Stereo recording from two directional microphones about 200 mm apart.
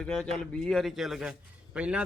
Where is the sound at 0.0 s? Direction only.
5° left (ahead or behind).